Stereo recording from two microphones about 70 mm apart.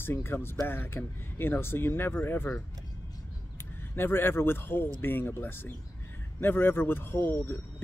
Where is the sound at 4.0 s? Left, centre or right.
Left.